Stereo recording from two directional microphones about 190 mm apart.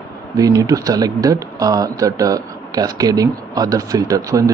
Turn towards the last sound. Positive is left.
turn(degrees=-20)  # may be behind; listen again after turning